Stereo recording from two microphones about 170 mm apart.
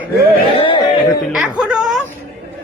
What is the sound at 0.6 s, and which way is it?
Speech, 30° left (ahead or behind).